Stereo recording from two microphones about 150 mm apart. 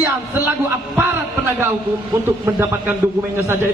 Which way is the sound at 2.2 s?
15° right (ahead or behind).